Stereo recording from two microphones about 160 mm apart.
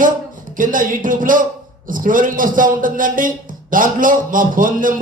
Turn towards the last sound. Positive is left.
turn(degrees=-55)  # may be behind; listen again after turning